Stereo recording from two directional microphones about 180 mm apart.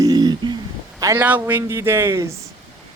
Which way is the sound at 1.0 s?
15° right (ahead or behind).